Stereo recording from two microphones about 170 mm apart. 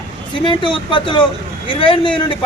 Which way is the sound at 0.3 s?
30° left (ahead or behind).